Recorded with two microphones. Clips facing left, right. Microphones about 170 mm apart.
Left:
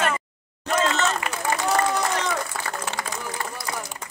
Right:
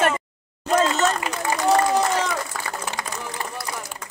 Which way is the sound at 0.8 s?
10° right (ahead or behind).